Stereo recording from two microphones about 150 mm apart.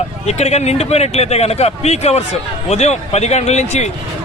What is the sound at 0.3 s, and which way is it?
Speech, 45° left (ahead or behind).